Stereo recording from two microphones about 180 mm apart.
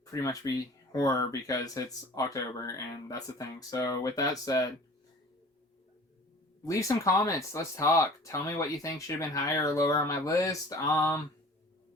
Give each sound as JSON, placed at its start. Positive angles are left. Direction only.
{"t": 0.0, "sound": "speech", "side_deg": 20}
{"t": 6.7, "sound": "speech", "side_deg": 15}